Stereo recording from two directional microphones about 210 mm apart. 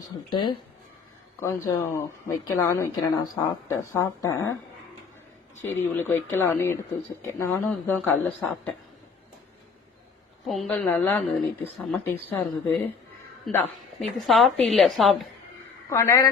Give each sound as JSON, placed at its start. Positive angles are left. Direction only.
{"t": 0.3, "sound": "a woman's voice", "side_deg": 20}
{"t": 5.6, "sound": "a woman's voice", "side_deg": 10}
{"t": 10.4, "sound": "a woman's voice", "side_deg": 0}
{"t": 15.9, "sound": "a woman's voice", "side_deg": 15}